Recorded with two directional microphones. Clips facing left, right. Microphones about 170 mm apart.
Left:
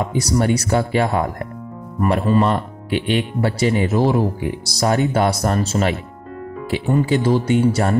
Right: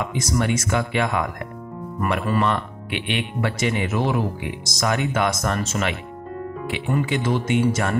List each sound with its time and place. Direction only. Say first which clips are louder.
0.0 s speech: left 4 dB; 35° left (ahead or behind)